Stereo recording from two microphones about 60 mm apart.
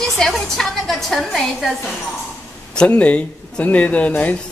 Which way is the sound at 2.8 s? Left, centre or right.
Left.